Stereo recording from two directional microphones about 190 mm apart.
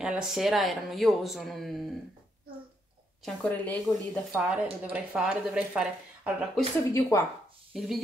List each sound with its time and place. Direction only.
0.0 s speech: 5° right (ahead or behind)
3.4 s speech: 10° left (ahead or behind)
6.9 s speech: 15° left (ahead or behind)
7.7 s speech: centre (ahead or behind)